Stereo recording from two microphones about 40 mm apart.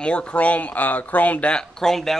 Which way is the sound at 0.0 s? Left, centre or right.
Left.